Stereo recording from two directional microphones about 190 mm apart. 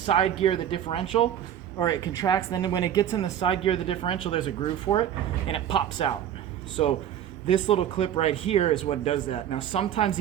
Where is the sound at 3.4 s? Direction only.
30° left (ahead or behind).